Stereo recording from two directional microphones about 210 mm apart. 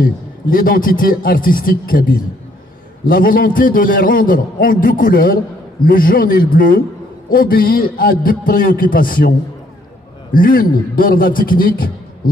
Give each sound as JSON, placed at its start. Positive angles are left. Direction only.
{"t": 0.0, "sound": "a man's voice", "side_deg": 40}
{"t": 10.3, "sound": "a man's voice", "side_deg": 40}